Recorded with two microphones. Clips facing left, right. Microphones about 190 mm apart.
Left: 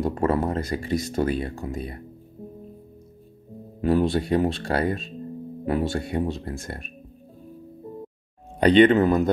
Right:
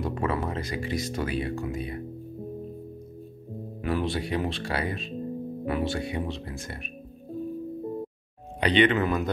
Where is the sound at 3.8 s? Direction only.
35° left (ahead or behind).